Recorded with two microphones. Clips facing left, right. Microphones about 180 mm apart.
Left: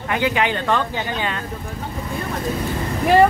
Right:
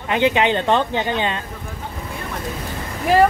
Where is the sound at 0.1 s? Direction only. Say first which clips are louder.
Right 3 dB; 20° right (ahead or behind).